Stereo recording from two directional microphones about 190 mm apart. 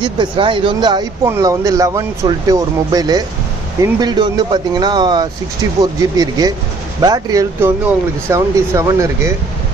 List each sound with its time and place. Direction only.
0.0 s speech: 25° right (ahead or behind)